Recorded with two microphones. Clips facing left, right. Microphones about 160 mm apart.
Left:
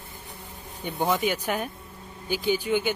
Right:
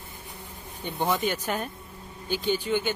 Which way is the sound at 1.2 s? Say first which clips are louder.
Left 2 dB; 10° left (ahead or behind).